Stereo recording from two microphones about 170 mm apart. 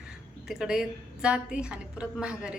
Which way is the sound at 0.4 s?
5° right (ahead or behind).